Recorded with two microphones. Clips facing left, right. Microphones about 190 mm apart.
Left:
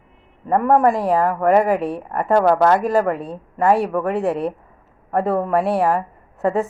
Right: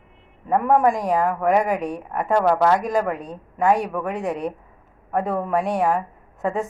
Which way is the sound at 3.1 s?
30° left (ahead or behind).